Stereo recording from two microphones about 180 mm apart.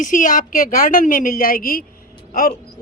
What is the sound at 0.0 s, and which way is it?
Speech, 45° left (ahead or behind).